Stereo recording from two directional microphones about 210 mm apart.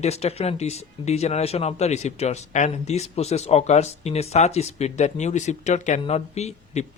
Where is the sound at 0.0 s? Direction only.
30° left (ahead or behind).